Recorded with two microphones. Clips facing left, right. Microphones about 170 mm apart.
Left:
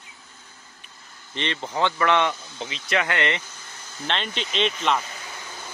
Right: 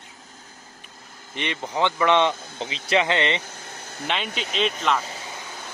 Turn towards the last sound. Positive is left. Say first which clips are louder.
# even
turn(degrees=0)  # may be behind; listen again after turning